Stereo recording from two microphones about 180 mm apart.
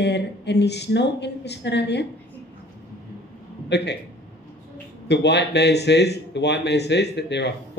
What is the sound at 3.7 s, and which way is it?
Speech, 70° left (ahead or behind).